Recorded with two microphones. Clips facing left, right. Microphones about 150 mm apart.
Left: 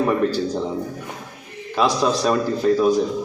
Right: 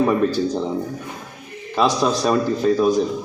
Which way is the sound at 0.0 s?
15° right (ahead or behind).